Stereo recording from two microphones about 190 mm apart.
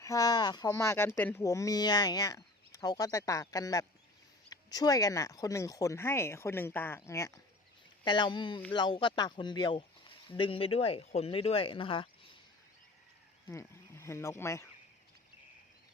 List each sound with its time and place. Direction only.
0.0 s speech: 20° left (ahead or behind)
13.5 s speech: 15° left (ahead or behind)